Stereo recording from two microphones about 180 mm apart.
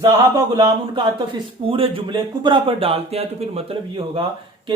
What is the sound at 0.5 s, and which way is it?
Speech, 25° right (ahead or behind).